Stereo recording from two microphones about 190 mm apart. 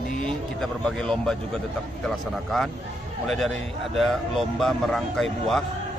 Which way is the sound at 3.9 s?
Centre (ahead or behind).